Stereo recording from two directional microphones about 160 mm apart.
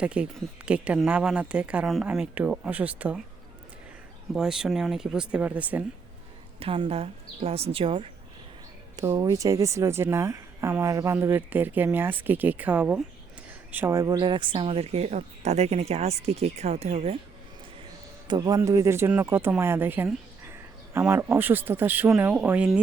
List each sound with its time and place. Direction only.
0.0 s a woman's voice: 5° right (ahead or behind)
4.4 s speech: 5° right (ahead or behind)
6.6 s speech: 35° right (ahead or behind)
9.0 s a woman's voice: 20° right (ahead or behind); by 17.2 s 40° right (ahead or behind)
18.3 s a woman's voice: 25° right (ahead or behind); by 22.8 s 10° right (ahead or behind)